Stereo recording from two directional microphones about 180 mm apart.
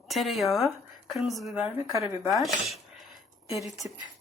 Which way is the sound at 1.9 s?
15° right (ahead or behind).